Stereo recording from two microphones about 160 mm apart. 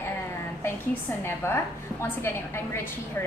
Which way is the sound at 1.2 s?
15° left (ahead or behind).